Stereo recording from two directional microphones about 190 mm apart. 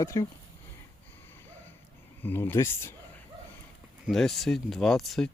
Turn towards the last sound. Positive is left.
turn(degrees=0)  # may be behind; listen again after turning